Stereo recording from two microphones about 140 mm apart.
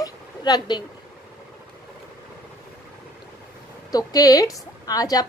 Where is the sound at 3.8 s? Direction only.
25° left (ahead or behind).